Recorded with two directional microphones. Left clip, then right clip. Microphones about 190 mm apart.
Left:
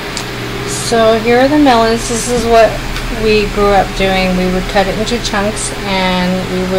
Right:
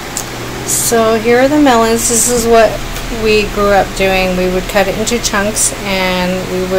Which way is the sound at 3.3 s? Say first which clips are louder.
Even; 10° right (ahead or behind).